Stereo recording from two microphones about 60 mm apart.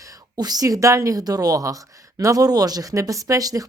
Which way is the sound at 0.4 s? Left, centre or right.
Right.